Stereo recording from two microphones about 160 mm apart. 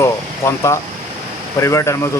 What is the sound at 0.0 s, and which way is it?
Speech, 15° left (ahead or behind).